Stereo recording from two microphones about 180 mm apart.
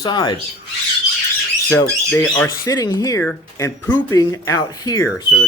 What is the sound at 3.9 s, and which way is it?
Speech, 20° left (ahead or behind).